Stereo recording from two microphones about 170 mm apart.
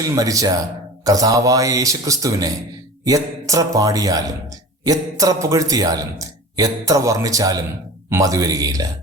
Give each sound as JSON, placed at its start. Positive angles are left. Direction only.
{"t": 0.0, "sound": "speech", "side_deg": -20}